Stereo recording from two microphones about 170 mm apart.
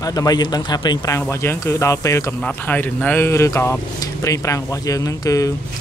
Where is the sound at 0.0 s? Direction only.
20° left (ahead or behind).